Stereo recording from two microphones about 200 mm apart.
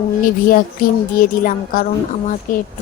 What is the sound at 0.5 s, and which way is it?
A woman's voice, 45° left (ahead or behind).